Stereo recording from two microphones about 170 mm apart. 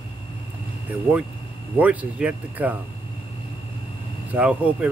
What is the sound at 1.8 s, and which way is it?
Speech, 10° right (ahead or behind).